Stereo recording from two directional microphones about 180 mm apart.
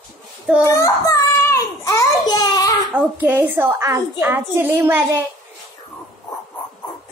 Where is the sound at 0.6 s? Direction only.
15° left (ahead or behind).